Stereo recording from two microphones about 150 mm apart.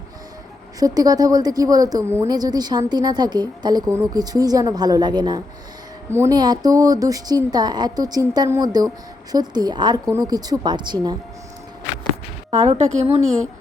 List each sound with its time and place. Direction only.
0.8 s a woman's voice: 25° right (ahead or behind)
6.1 s a woman's voice: 15° right (ahead or behind)
6.3 s a woman's voice: 25° right (ahead or behind)
12.5 s a woman's voice: 45° right (ahead or behind)